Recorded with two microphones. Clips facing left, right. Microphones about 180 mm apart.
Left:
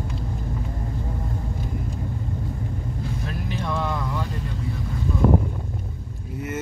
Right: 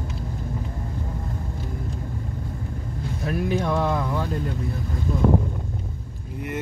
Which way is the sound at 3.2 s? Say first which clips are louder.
Right 9 dB; 50° right (ahead or behind).